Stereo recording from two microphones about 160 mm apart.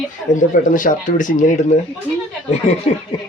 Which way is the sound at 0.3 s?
55° left (ahead or behind).